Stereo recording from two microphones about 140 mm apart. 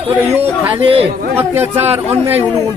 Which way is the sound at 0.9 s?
45° right (ahead or behind).